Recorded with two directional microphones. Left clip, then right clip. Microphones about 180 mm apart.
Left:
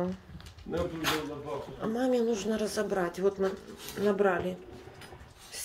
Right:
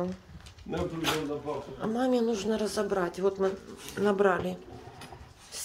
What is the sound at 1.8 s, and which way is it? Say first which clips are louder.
A woman's voice: right 1 dB; 20° right (ahead or behind).